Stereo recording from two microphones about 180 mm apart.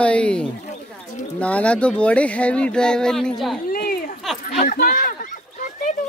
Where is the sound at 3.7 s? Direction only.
55° left (ahead or behind).